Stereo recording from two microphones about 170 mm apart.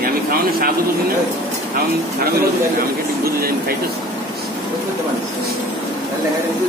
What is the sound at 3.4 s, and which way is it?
Speech, 60° right (ahead or behind).